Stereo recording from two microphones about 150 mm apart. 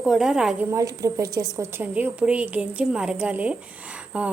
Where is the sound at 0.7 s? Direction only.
20° right (ahead or behind).